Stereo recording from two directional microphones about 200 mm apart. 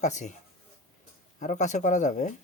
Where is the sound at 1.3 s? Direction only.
40° left (ahead or behind).